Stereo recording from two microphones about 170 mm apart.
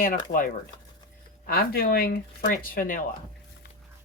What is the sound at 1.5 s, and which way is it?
Speech, 60° left (ahead or behind).